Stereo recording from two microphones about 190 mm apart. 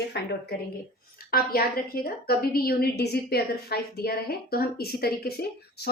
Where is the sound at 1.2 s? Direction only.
55° left (ahead or behind).